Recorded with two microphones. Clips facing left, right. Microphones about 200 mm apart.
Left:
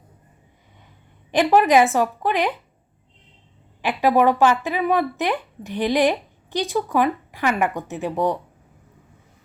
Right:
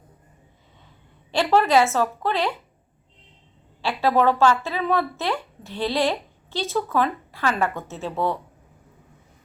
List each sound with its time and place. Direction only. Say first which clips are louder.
1.3 s a woman's voice: left 3 dB; 15° left (ahead or behind)
3.8 s a woman's voice: left 3 dB; 15° left (ahead or behind)